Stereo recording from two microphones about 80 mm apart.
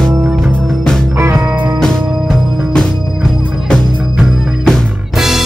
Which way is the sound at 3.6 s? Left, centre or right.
Centre.